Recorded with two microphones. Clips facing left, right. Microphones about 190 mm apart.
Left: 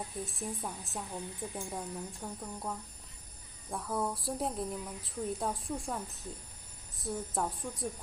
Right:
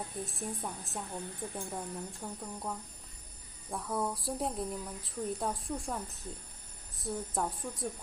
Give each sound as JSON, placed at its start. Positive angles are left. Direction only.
{"t": 0.1, "sound": "a woman's voice", "side_deg": 0}